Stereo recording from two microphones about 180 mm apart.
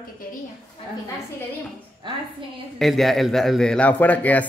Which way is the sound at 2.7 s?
Centre (ahead or behind).